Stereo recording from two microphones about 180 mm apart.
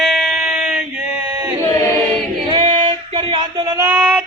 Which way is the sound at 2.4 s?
30° right (ahead or behind).